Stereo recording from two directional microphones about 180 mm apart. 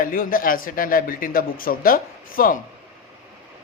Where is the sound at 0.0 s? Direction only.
50° left (ahead or behind).